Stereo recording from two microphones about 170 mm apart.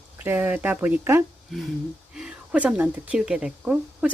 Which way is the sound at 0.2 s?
10° right (ahead or behind).